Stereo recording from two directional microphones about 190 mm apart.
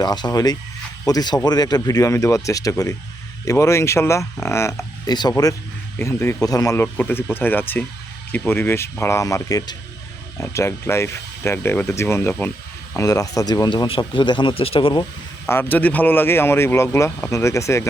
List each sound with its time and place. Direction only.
0.0 s speech: 20° left (ahead or behind)
15.4 s speech: 10° left (ahead or behind)